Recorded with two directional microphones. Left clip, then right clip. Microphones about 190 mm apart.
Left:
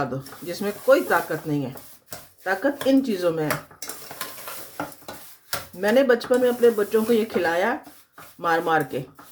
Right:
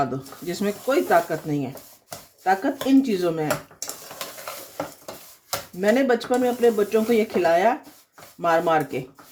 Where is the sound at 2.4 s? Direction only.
25° right (ahead or behind).